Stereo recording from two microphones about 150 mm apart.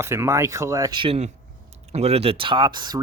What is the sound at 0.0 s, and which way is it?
Speech, 20° right (ahead or behind).